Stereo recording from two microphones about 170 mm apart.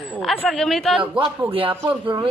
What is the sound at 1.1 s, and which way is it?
Speech, 30° right (ahead or behind).